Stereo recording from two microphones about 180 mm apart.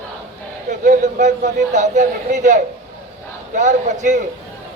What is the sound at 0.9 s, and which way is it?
A man's voice, 40° right (ahead or behind).